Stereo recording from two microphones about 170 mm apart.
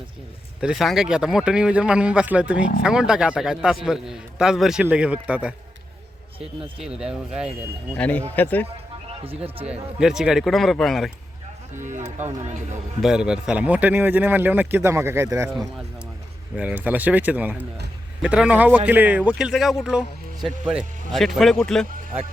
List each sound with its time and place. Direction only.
0.6 s a man's voice: centre (ahead or behind)
6.7 s a man's voice: 5° right (ahead or behind)
7.9 s speech: 10° left (ahead or behind)
9.0 s a sound: 35° right (ahead or behind)
10.0 s a man's voice: 5° right (ahead or behind)
11.9 s speech: 45° right (ahead or behind)
13.0 s speech: 5° right (ahead or behind)
16.6 s a man's voice: 10° right (ahead or behind)